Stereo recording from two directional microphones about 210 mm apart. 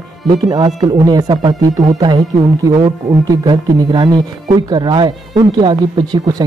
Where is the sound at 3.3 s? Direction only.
20° right (ahead or behind).